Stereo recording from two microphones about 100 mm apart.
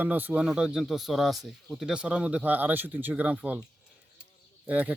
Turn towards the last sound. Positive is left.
turn(degrees=-15)  # may be behind; listen again after turning